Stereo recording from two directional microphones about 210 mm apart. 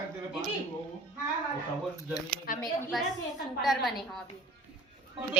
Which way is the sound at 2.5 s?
45° left (ahead or behind).